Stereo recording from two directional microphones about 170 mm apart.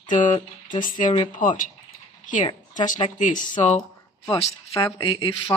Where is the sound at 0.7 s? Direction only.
50° left (ahead or behind); by 5.3 s 30° left (ahead or behind).